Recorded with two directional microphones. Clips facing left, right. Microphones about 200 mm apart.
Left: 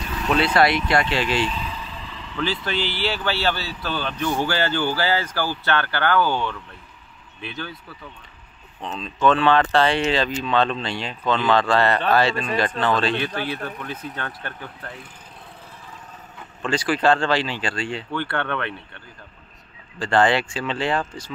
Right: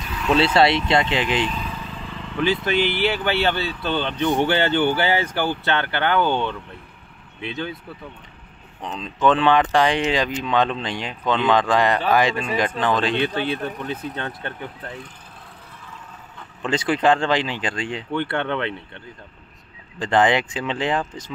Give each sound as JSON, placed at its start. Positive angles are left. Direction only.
{"t": 0.4, "sound": "speech", "side_deg": -25}
{"t": 1.6, "sound": "vehicle", "side_deg": -50}
{"t": 2.3, "sound": "speech", "side_deg": -15}
{"t": 8.8, "sound": "speech", "side_deg": -15}
{"t": 16.6, "sound": "speech", "side_deg": -20}
{"t": 20.0, "sound": "speech", "side_deg": -15}